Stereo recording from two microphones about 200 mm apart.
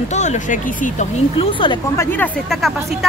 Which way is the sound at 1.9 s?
10° left (ahead or behind).